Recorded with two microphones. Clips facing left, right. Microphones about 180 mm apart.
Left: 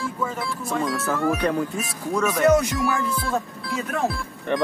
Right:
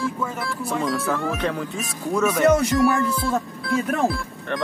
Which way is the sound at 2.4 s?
30° right (ahead or behind).